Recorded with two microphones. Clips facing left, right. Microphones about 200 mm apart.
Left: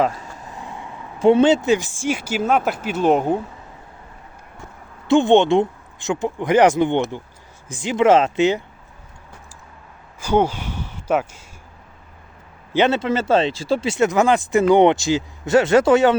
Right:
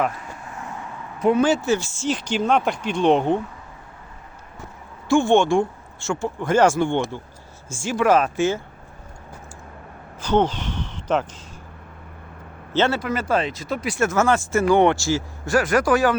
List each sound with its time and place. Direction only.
0.0 s speech: 20° left (ahead or behind)
5.0 s speech: 20° left (ahead or behind)
10.2 s speech: 10° left (ahead or behind)
12.7 s speech: 20° left (ahead or behind)